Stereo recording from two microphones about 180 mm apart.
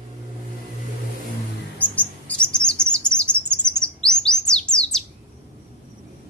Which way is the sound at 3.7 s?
5° left (ahead or behind).